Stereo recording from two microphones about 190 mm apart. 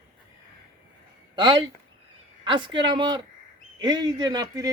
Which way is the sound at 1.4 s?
25° right (ahead or behind).